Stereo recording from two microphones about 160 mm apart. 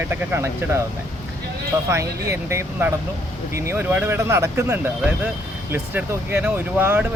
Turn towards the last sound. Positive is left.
turn(degrees=-10)  # may be behind; listen again after turning